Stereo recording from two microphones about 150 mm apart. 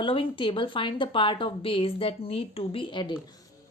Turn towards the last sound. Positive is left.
turn(degrees=35)  # may be behind; listen again after turning